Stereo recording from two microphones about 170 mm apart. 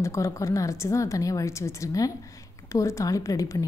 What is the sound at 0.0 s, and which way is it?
A woman's voice, 15° left (ahead or behind).